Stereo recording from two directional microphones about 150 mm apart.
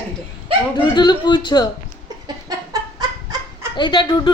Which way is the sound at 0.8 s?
30° left (ahead or behind).